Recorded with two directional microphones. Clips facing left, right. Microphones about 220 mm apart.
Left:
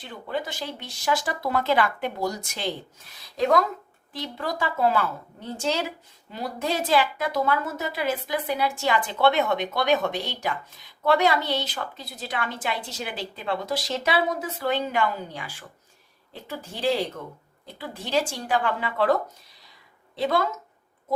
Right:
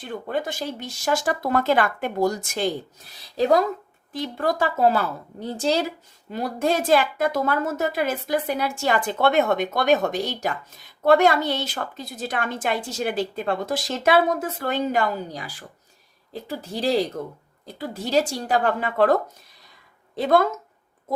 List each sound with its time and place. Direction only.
0.0 s a woman's voice: 50° right (ahead or behind)
3.3 s a woman's voice: 35° right (ahead or behind)
4.1 s a woman's voice: 45° right (ahead or behind)
6.3 s a woman's voice: 50° right (ahead or behind)
20.1 s a woman's voice: 50° right (ahead or behind)